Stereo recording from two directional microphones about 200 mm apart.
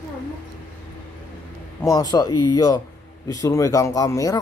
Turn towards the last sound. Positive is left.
turn(degrees=15)  # may be behind; listen again after turning